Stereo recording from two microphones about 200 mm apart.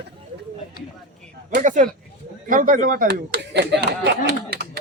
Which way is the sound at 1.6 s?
40° right (ahead or behind).